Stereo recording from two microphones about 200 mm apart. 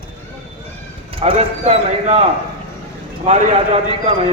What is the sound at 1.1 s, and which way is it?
Speech, 30° right (ahead or behind).